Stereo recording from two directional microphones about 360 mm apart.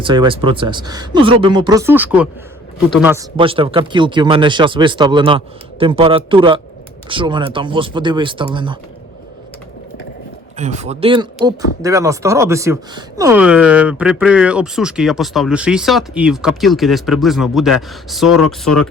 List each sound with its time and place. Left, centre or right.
0.0 s speech: centre
10.6 s speech: centre